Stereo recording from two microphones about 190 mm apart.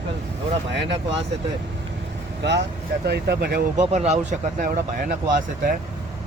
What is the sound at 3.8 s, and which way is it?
Speech, 35° right (ahead or behind).